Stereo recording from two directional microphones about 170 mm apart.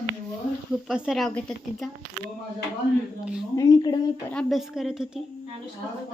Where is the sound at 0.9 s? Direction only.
5° right (ahead or behind).